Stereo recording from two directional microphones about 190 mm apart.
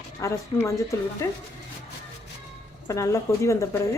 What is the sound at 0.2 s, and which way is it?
Speech, 15° left (ahead or behind).